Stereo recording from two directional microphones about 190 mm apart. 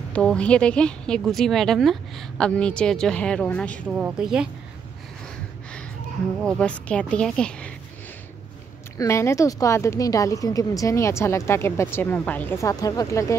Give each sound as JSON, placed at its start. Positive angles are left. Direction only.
{"t": 0.1, "sound": "a woman's voice", "side_deg": 5}
{"t": 3.8, "sound": "a woman's voice", "side_deg": -5}
{"t": 6.4, "sound": "a woman's voice", "side_deg": 5}
{"t": 8.9, "sound": "a woman's voice", "side_deg": 15}